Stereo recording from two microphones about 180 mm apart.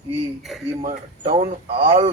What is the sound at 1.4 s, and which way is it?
Speech, 30° right (ahead or behind).